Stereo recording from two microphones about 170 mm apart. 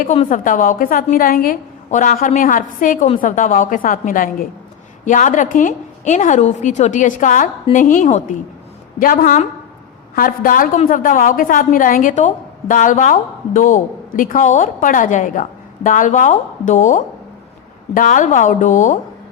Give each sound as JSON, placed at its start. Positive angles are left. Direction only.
{"t": 0.0, "sound": "a woman's voice", "side_deg": 45}